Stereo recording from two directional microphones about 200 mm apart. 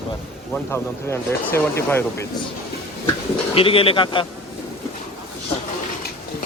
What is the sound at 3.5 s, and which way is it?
Speech, 25° left (ahead or behind).